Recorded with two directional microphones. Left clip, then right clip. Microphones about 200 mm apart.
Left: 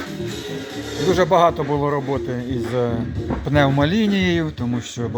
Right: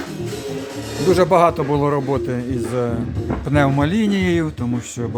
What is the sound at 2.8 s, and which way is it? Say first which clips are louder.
Speech: left 2 dB; 10° right (ahead or behind).